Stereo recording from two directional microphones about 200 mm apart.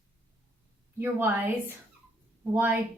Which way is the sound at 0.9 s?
10° right (ahead or behind).